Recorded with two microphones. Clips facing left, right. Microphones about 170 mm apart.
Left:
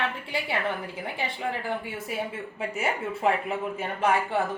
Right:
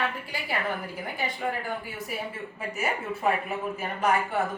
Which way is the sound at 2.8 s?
25° left (ahead or behind).